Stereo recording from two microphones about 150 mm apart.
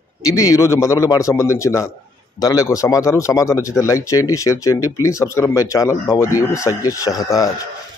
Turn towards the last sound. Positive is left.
turn(degrees=25)  # may be behind; listen again after turning